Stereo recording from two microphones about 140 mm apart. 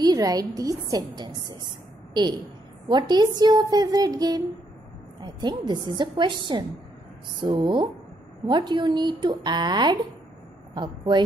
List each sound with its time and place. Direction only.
0.0 s a woman's voice: 25° right (ahead or behind)